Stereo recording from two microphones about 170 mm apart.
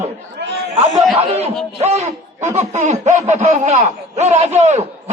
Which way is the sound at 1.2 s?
40° right (ahead or behind).